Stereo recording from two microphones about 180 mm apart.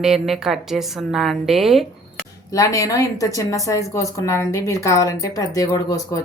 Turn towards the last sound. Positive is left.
turn(degrees=20)  # may be behind; listen again after turning